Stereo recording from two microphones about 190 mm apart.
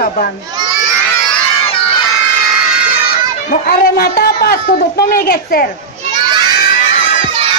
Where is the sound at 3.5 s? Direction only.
55° left (ahead or behind).